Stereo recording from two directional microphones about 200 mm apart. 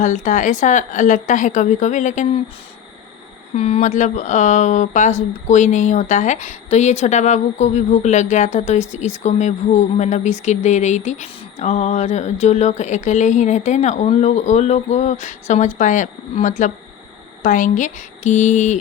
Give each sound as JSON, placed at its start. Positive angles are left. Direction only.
{"t": 0.0, "sound": "speech", "side_deg": 40}
{"t": 3.5, "sound": "speech", "side_deg": 35}